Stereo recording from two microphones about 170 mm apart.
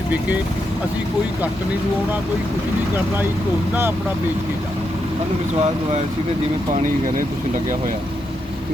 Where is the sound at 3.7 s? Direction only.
15° right (ahead or behind).